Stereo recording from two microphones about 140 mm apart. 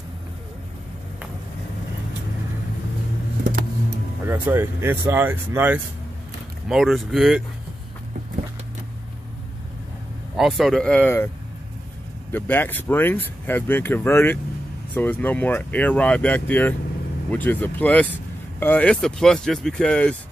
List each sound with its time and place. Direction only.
4.2 s speech: 15° right (ahead or behind)
6.7 s speech: centre (ahead or behind)
10.3 s speech: centre (ahead or behind)
12.3 s speech: 15° left (ahead or behind)